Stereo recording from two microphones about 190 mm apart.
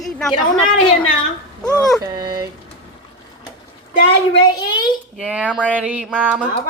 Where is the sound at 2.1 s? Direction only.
20° right (ahead or behind).